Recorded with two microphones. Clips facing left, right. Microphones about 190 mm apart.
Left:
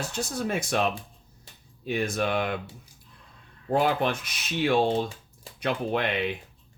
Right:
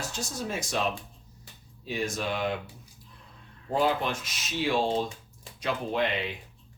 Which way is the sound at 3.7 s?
60° left (ahead or behind).